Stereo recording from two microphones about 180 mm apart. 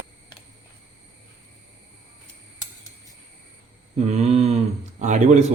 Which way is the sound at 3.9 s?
35° right (ahead or behind).